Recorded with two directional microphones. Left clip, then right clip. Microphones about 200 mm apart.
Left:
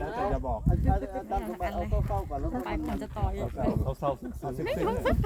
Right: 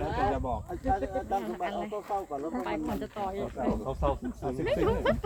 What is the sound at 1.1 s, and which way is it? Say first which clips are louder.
Speech: right 2 dB; 55° left (ahead or behind).